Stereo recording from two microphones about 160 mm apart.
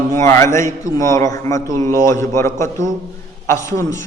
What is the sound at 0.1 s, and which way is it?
A man's voice, 20° left (ahead or behind).